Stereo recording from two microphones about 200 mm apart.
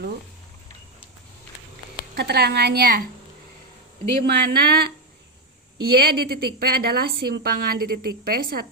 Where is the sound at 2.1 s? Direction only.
55° right (ahead or behind).